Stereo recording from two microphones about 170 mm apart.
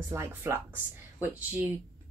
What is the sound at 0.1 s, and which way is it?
A woman's voice, 15° right (ahead or behind).